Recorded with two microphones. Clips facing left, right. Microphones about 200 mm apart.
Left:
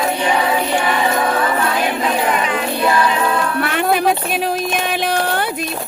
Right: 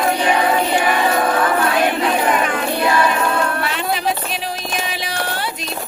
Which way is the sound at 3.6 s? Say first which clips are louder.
Left 5 dB; 55° left (ahead or behind).